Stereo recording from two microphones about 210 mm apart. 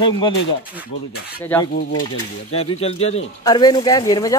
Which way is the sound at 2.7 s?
30° left (ahead or behind).